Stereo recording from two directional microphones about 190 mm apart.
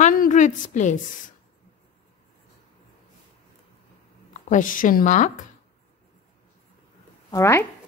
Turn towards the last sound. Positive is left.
turn(degrees=15)  # may be behind; listen again after turning